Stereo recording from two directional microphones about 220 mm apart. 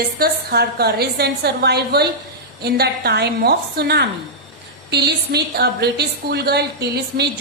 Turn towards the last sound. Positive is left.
turn(degrees=-50)  # may be behind; listen again after turning